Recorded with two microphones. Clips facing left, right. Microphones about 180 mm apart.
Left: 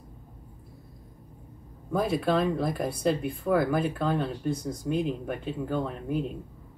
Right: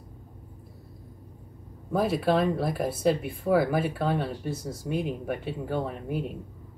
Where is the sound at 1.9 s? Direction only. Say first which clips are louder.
Right 1 dB; centre (ahead or behind).